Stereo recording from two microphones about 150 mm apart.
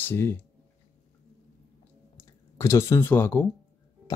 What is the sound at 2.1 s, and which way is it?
Speech, 15° left (ahead or behind).